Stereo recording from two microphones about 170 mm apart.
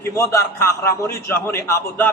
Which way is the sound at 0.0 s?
15° left (ahead or behind).